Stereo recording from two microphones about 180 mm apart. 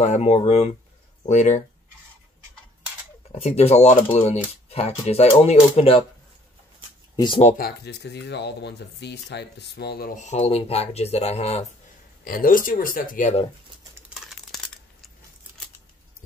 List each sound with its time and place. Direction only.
0.0 s speech: 40° left (ahead or behind)
3.3 s speech: 35° left (ahead or behind)
7.2 s speech: 25° left (ahead or behind)
7.4 s speech: 55° left (ahead or behind); by 11.6 s 35° left (ahead or behind)
12.3 s speech: 50° left (ahead or behind)
14.2 s a sound: centre (ahead or behind)